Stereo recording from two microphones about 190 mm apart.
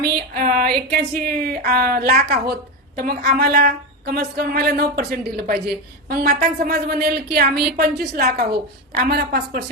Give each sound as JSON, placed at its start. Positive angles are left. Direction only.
{"t": 0.0, "sound": "a woman's voice", "side_deg": -50}